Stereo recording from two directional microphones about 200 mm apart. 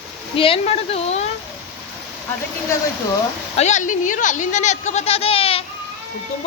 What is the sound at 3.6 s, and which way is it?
Speech, 35° left (ahead or behind).